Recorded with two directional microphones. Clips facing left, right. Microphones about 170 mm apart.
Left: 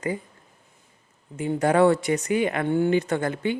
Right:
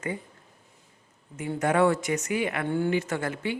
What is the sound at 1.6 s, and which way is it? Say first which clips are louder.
Speech: left 4 dB; 35° left (ahead or behind).